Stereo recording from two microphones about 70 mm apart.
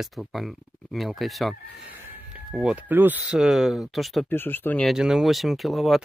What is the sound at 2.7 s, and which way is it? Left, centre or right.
Speech, right.